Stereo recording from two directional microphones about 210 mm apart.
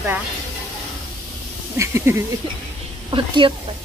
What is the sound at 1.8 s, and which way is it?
Speech, 10° right (ahead or behind).